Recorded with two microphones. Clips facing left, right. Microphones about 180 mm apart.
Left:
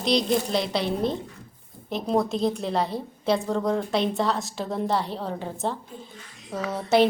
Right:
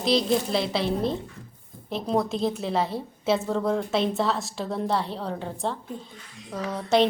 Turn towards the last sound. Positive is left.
turn(degrees=5)  # may be behind; listen again after turning